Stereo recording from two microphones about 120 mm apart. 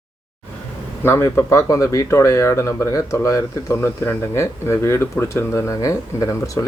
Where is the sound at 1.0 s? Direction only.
20° left (ahead or behind).